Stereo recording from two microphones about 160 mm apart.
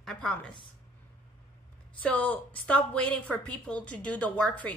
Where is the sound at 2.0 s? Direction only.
10° left (ahead or behind).